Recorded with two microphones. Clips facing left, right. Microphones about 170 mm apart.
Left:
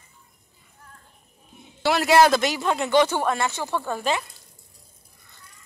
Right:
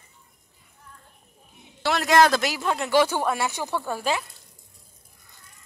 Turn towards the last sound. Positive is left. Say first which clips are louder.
# left 1 dB
turn(degrees=-5)  # may be behind; listen again after turning